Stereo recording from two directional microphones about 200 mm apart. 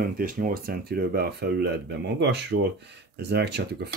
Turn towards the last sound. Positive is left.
turn(degrees=-55)  # may be behind; listen again after turning